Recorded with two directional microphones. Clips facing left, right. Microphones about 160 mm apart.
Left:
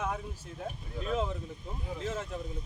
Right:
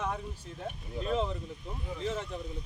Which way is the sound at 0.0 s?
5° left (ahead or behind).